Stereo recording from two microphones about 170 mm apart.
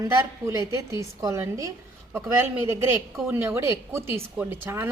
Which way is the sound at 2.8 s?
15° right (ahead or behind).